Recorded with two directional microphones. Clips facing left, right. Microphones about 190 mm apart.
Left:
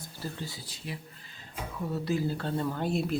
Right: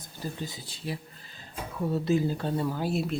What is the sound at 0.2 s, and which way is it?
Speech, 15° right (ahead or behind).